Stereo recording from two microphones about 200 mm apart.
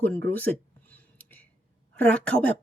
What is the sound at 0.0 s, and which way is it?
Speech, 10° left (ahead or behind).